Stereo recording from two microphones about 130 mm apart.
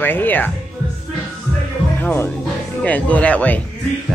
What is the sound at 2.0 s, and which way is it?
Speech, 10° left (ahead or behind).